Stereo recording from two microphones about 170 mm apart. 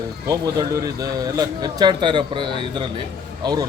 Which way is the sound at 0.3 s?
20° right (ahead or behind).